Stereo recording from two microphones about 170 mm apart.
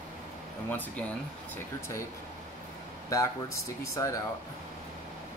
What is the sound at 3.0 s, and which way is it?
Speech, 20° left (ahead or behind).